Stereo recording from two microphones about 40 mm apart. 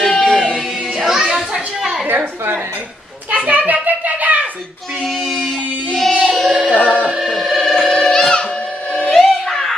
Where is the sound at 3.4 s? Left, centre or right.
Right.